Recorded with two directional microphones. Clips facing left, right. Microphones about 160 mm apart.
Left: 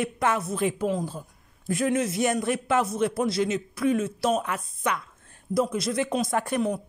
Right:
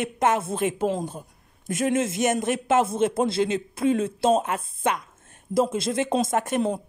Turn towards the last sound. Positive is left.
turn(degrees=-25)  # may be behind; listen again after turning